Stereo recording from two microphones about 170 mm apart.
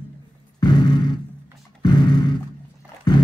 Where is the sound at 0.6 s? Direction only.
25° left (ahead or behind).